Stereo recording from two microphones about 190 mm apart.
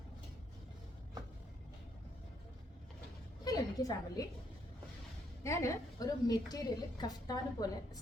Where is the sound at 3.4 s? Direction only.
20° left (ahead or behind).